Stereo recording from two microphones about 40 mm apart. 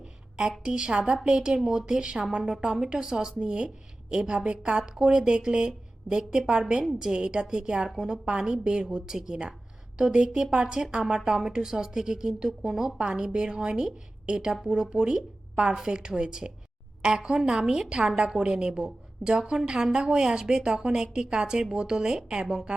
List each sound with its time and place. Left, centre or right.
0.7 s a woman's voice: centre